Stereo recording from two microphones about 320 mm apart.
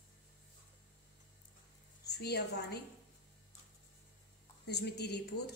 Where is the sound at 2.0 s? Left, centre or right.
Left.